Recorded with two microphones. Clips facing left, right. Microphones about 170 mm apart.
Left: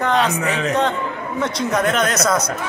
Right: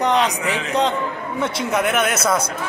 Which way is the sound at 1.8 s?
10° right (ahead or behind).